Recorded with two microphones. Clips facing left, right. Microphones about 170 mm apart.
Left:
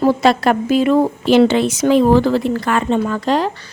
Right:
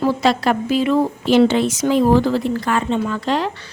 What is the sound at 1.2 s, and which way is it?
A woman's voice, 75° left (ahead or behind).